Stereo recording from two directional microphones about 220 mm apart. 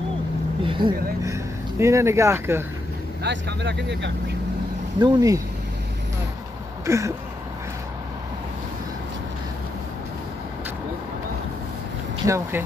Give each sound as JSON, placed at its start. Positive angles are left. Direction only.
{"t": 0.7, "sound": "vehicle", "side_deg": -20}
{"t": 1.2, "sound": "speech", "side_deg": -15}
{"t": 3.3, "sound": "speech", "side_deg": -50}
{"t": 5.0, "sound": "speech", "side_deg": -15}
{"t": 6.9, "sound": "speech", "side_deg": -15}
{"t": 12.3, "sound": "speech", "side_deg": -10}